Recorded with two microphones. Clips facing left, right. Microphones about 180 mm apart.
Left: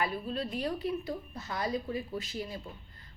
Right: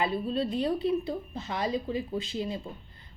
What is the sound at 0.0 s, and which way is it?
A woman's voice, 30° right (ahead or behind).